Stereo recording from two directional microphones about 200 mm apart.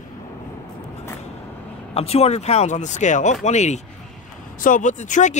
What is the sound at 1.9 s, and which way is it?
Speech, 30° left (ahead or behind).